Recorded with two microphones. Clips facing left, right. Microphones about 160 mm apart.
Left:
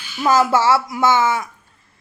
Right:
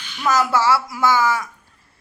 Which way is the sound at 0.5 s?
25° left (ahead or behind).